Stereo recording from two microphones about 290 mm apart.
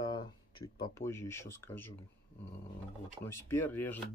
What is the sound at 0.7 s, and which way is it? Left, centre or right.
Speech, centre.